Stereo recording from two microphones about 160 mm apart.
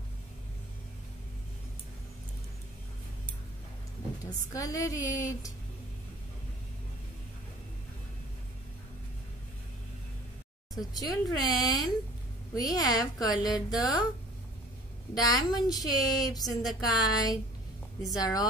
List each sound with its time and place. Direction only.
4.2 s a woman's voice: 20° left (ahead or behind)
10.7 s a woman's voice: 25° left (ahead or behind)
15.1 s a woman's voice: 25° left (ahead or behind)